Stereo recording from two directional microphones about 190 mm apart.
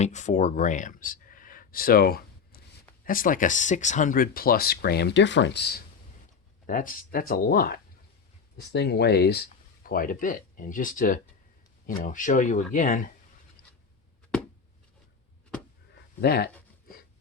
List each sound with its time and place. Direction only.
0.0 s speech: 40° left (ahead or behind); by 5.8 s 60° left (ahead or behind)
6.7 s speech: 45° left (ahead or behind)
16.2 s speech: 55° left (ahead or behind)